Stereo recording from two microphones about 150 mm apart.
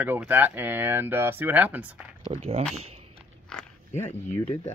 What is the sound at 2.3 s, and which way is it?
Speech, 45° right (ahead or behind).